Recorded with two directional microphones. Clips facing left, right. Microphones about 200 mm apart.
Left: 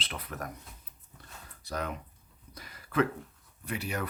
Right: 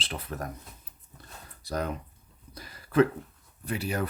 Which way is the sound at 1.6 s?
35° right (ahead or behind).